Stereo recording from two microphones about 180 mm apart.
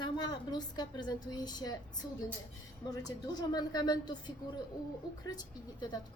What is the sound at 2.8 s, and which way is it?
A woman's voice, 20° left (ahead or behind).